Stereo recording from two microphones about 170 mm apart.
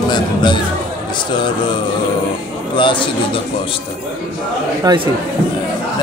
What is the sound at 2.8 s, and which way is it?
Speech, 30° left (ahead or behind).